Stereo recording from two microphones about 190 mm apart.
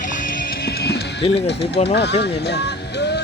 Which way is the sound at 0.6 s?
60° left (ahead or behind).